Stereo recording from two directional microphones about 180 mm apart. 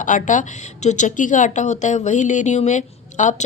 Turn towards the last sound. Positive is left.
turn(degrees=40)  # may be behind; listen again after turning